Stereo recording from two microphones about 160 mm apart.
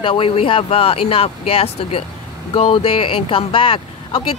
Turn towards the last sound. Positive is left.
turn(degrees=35)  # may be behind; listen again after turning